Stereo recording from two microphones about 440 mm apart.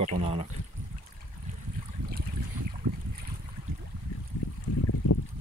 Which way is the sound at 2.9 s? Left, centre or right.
Right.